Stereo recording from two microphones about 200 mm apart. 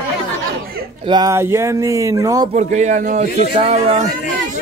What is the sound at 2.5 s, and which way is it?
A man's voice, 35° right (ahead or behind).